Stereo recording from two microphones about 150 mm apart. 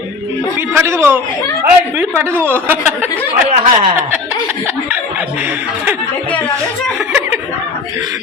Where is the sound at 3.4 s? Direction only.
50° right (ahead or behind).